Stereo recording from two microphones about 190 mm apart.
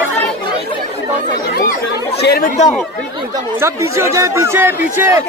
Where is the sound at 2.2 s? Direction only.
55° left (ahead or behind).